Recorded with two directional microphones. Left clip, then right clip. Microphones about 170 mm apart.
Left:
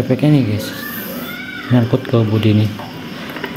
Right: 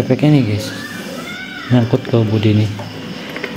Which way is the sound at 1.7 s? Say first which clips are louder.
Right 1 dB; 5° right (ahead or behind).